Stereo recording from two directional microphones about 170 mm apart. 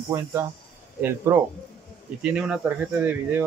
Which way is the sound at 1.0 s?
15° right (ahead or behind).